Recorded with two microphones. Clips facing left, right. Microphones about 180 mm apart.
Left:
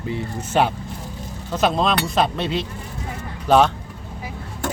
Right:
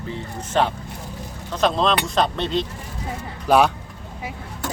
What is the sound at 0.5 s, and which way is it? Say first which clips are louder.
Speech: left 1 dB; 10° left (ahead or behind).